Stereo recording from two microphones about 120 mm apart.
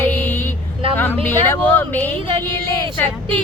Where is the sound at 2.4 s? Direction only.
20° left (ahead or behind).